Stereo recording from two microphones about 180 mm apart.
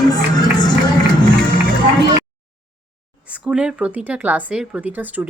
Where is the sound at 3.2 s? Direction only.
5° right (ahead or behind).